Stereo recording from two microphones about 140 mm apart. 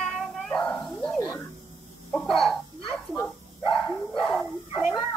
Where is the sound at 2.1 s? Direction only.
Centre (ahead or behind).